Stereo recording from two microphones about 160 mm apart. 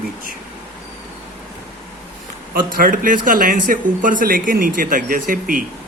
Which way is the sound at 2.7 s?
60° right (ahead or behind).